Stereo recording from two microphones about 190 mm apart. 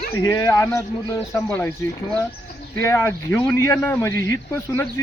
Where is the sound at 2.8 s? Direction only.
15° left (ahead or behind).